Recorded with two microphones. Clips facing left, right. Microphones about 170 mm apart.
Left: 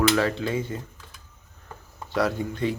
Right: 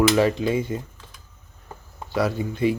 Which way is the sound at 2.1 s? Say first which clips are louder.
Right 1 dB; 5° right (ahead or behind).